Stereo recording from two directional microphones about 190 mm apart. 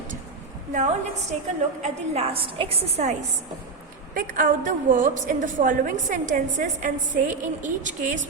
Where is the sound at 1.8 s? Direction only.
30° right (ahead or behind).